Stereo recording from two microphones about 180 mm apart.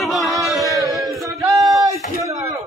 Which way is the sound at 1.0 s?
Centre (ahead or behind).